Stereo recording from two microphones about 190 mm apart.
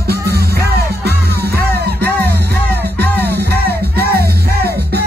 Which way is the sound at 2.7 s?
10° left (ahead or behind).